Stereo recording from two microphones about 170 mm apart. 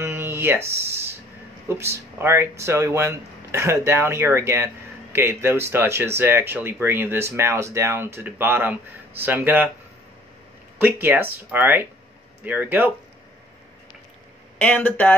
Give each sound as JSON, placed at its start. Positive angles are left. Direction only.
{"t": 0.0, "sound": "a sound", "side_deg": -15}
{"t": 1.7, "sound": "speech", "side_deg": -15}
{"t": 10.8, "sound": "speech", "side_deg": -10}
{"t": 14.6, "sound": "speech", "side_deg": 10}